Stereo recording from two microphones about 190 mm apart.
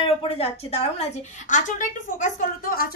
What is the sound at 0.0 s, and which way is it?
A woman's voice, 30° left (ahead or behind).